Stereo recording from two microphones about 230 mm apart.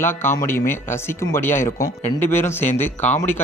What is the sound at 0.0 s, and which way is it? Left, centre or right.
Speech, centre.